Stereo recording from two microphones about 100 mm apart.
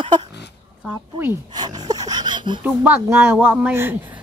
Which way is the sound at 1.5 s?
40° right (ahead or behind).